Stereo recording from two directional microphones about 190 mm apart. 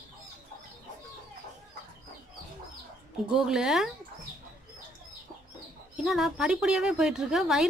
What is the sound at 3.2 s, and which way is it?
Speech, 5° right (ahead or behind).